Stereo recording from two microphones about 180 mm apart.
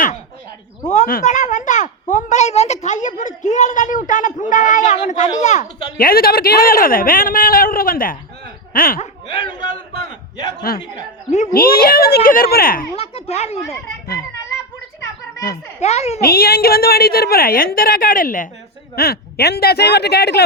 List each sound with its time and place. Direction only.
0.9 s speech: 45° left (ahead or behind)
10.8 s speech: 35° left (ahead or behind)
11.5 s a woman's voice: 55° left (ahead or behind)
13.0 s speech: 35° left (ahead or behind)
15.8 s speech: 35° left (ahead or behind)
16.2 s a woman's voice: 55° left (ahead or behind)